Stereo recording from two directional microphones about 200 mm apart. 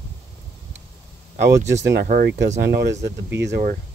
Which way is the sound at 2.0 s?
50° right (ahead or behind).